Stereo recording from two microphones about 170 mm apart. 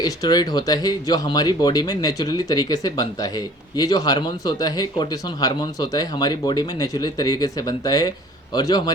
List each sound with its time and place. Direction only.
0.0 s speech: 25° left (ahead or behind)